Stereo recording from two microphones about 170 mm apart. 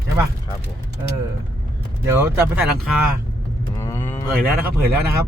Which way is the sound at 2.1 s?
15° right (ahead or behind).